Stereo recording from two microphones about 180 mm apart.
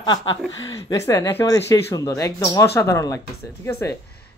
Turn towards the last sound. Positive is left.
turn(degrees=15)  # may be behind; listen again after turning